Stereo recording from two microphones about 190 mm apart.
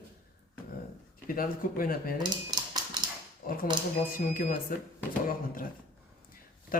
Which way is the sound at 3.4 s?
45° left (ahead or behind).